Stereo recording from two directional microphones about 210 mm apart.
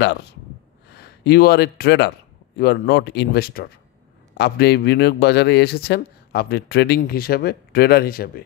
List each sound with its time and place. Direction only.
0.0 s a man's voice: 55° left (ahead or behind)